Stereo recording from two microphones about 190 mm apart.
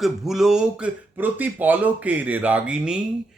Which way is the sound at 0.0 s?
Centre (ahead or behind).